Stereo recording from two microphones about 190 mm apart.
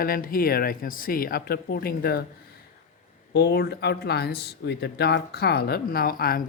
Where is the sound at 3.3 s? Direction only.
55° left (ahead or behind).